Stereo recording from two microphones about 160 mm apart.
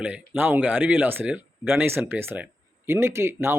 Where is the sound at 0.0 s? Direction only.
10° right (ahead or behind).